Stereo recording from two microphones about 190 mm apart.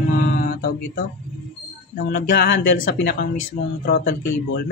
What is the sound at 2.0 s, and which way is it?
Speech, 65° left (ahead or behind).